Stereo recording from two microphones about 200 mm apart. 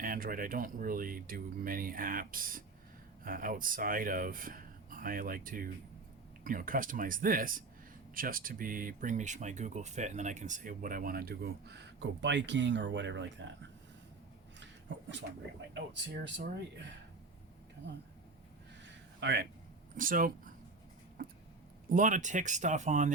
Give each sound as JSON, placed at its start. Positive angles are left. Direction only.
{"t": 0.0, "sound": "speech", "side_deg": -45}
{"t": 14.6, "sound": "a sound", "side_deg": -65}
{"t": 15.7, "sound": "speech", "side_deg": -60}
{"t": 19.2, "sound": "speech", "side_deg": -55}
{"t": 20.0, "sound": "speech", "side_deg": -45}
{"t": 21.8, "sound": "speech", "side_deg": -40}